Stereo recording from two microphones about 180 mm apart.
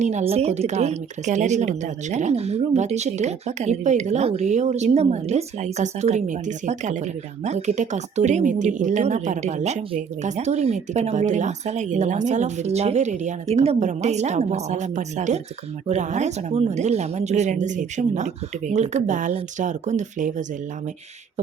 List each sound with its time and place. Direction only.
0.0 s a woman's voice: 40° right (ahead or behind)